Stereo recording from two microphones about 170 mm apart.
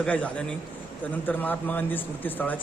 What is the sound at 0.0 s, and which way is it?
A man's voice, 10° left (ahead or behind).